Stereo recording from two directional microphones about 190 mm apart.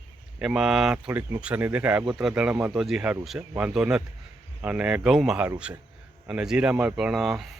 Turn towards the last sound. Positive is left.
turn(degrees=0)  # may be behind; listen again after turning